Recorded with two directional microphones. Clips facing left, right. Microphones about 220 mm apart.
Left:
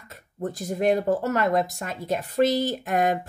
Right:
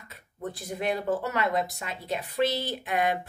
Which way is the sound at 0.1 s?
45° left (ahead or behind).